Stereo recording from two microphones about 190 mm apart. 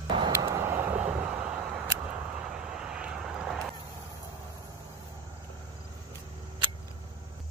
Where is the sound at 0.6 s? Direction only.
10° right (ahead or behind).